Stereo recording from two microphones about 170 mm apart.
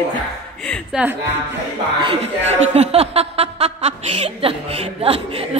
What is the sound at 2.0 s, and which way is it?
Speech, 35° right (ahead or behind).